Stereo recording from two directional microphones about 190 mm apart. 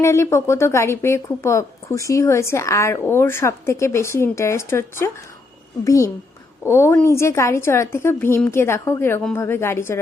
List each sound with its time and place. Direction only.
0.0 s a woman's voice: 15° left (ahead or behind)